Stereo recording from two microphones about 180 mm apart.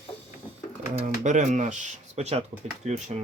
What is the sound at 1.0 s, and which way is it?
Speech, 45° right (ahead or behind).